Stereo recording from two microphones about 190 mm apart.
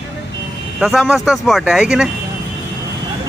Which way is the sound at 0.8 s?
Centre (ahead or behind).